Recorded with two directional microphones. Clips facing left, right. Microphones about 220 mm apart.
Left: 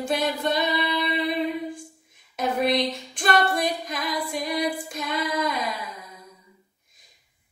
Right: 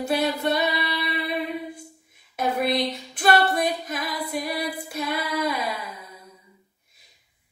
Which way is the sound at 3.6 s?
5° right (ahead or behind).